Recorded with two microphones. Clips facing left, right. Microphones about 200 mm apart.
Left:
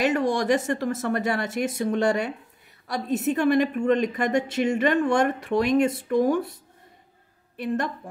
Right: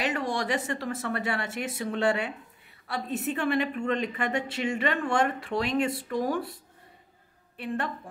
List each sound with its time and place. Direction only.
0.0 s a woman's voice: 45° left (ahead or behind)
7.6 s a woman's voice: 40° left (ahead or behind)